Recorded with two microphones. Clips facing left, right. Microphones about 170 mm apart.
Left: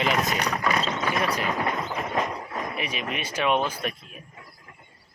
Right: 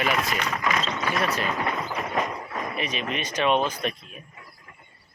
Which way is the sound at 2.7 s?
10° left (ahead or behind).